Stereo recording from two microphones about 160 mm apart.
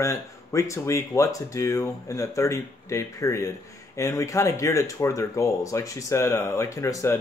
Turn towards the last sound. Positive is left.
turn(degrees=20)  # may be behind; listen again after turning